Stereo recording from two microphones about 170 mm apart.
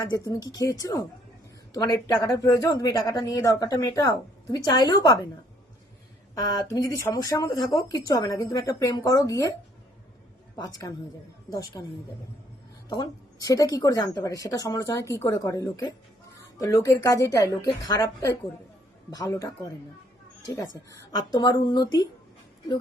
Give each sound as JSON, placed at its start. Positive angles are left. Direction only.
{"t": 0.0, "sound": "a woman's voice", "side_deg": 25}
{"t": 6.3, "sound": "a woman's voice", "side_deg": 20}
{"t": 10.5, "sound": "a woman's voice", "side_deg": 20}
{"t": 21.1, "sound": "a woman's voice", "side_deg": 20}